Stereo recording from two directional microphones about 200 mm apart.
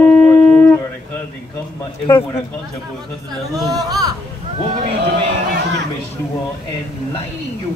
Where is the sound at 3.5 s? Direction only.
20° right (ahead or behind).